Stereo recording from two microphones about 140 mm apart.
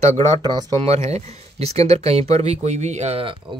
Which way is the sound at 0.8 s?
50° right (ahead or behind).